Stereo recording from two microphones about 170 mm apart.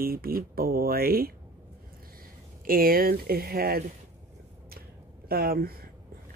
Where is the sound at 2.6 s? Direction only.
60° right (ahead or behind).